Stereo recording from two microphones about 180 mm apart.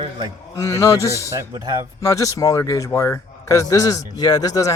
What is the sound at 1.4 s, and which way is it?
Speech, 20° right (ahead or behind).